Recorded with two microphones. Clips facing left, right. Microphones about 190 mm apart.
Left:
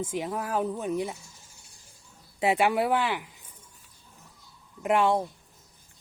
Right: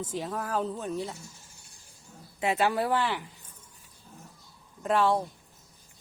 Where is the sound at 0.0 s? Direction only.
15° left (ahead or behind).